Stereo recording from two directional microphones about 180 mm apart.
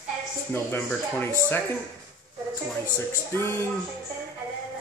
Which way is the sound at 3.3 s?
15° left (ahead or behind).